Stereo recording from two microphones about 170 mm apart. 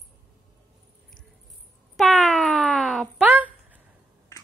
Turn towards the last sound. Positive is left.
turn(degrees=-10)  # may be behind; listen again after turning